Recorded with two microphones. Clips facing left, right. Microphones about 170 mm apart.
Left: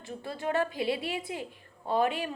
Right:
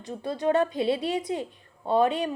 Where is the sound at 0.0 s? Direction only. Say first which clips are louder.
Right 7 dB; 20° right (ahead or behind).